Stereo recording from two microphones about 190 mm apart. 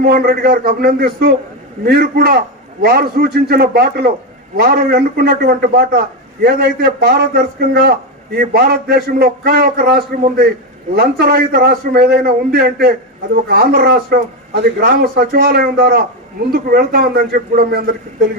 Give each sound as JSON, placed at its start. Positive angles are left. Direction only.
{"t": 0.0, "sound": "a man's voice", "side_deg": -50}